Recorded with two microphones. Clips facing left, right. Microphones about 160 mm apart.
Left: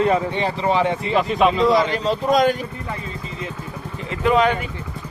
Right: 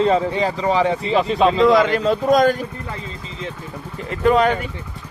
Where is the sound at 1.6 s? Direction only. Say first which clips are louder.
Right 3 dB; 50° right (ahead or behind).